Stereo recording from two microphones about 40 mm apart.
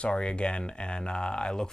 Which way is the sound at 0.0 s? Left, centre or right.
Left.